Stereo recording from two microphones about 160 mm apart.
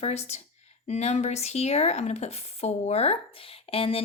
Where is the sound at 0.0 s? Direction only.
40° left (ahead or behind).